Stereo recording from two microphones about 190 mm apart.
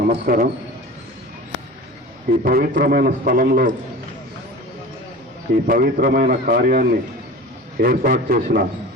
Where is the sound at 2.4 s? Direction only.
50° right (ahead or behind).